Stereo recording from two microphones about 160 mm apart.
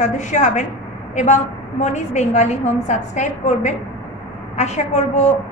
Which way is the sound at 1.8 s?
45° left (ahead or behind).